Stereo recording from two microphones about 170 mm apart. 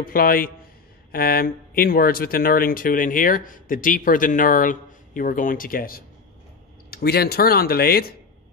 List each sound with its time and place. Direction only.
0.0 s speech: 60° left (ahead or behind)